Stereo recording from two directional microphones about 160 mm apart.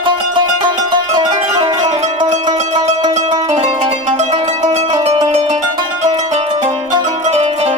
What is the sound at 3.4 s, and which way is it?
Music, 35° right (ahead or behind).